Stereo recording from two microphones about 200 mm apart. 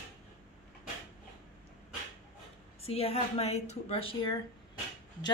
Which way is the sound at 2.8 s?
30° left (ahead or behind).